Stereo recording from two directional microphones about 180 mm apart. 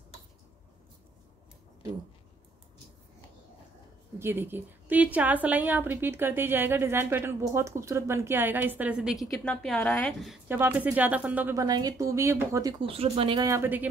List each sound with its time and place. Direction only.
4.2 s a woman's voice: 10° right (ahead or behind)
10.5 s a woman's voice: 10° right (ahead or behind)
12.8 s speech: 35° right (ahead or behind); by 13.8 s 10° right (ahead or behind)